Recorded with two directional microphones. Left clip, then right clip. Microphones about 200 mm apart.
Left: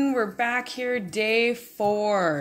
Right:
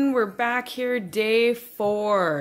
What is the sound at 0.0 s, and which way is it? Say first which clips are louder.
Speech: right 2 dB; 15° right (ahead or behind).